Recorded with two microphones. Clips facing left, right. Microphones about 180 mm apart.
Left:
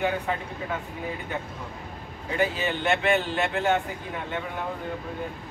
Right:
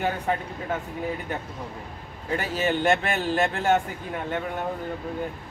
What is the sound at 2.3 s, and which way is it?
Speech, 45° right (ahead or behind).